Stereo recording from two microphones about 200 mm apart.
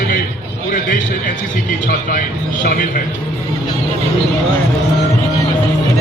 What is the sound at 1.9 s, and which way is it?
Speech, 45° left (ahead or behind).